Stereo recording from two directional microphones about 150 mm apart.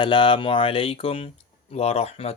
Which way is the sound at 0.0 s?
35° left (ahead or behind).